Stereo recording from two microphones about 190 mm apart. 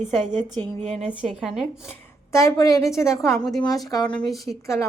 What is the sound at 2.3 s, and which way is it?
A woman's voice, 15° left (ahead or behind).